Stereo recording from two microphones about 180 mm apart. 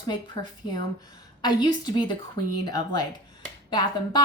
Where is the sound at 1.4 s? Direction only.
20° left (ahead or behind).